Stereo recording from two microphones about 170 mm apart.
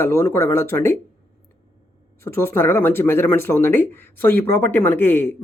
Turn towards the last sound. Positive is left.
turn(degrees=10)  # may be behind; listen again after turning